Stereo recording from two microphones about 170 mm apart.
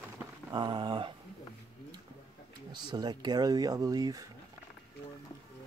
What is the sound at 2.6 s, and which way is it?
Speech, 25° right (ahead or behind).